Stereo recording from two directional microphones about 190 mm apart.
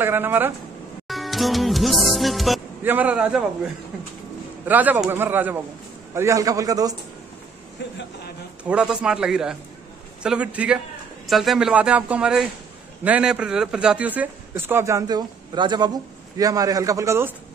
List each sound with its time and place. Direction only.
0.0 s a man's voice: 10° right (ahead or behind)
1.0 s music: centre (ahead or behind)
2.9 s a man's voice: 10° right (ahead or behind)
4.6 s a man's voice: 10° right (ahead or behind)
7.8 s speech: 65° left (ahead or behind)
8.6 s a man's voice: 5° right (ahead or behind)